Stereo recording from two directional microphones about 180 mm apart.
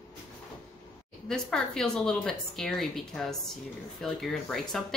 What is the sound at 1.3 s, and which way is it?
A woman's voice, 5° left (ahead or behind).